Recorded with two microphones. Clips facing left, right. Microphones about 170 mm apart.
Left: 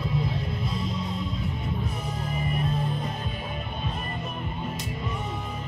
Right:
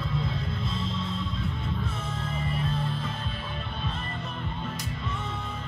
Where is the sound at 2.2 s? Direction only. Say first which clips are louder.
Left 2 dB; 15° left (ahead or behind).